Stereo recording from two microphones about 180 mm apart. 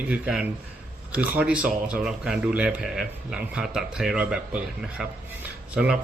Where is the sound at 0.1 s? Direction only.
5° right (ahead or behind).